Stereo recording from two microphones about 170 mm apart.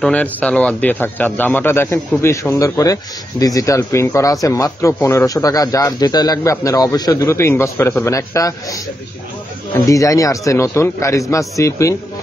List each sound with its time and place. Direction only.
0.0 s a man's voice: 5° left (ahead or behind)
9.8 s a man's voice: 20° left (ahead or behind)